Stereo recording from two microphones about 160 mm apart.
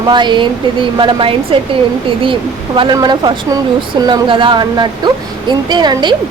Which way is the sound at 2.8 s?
25° right (ahead or behind).